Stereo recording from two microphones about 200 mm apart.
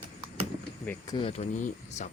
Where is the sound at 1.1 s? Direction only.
30° left (ahead or behind).